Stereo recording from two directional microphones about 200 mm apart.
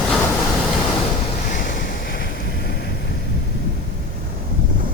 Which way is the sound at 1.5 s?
45° left (ahead or behind).